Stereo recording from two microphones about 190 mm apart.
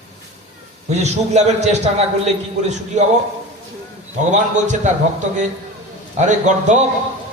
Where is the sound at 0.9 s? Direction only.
35° right (ahead or behind).